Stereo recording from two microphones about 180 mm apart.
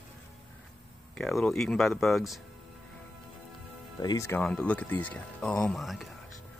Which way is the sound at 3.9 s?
20° left (ahead or behind).